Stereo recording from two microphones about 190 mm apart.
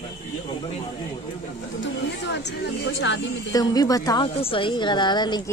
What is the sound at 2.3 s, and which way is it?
Speech, 75° left (ahead or behind).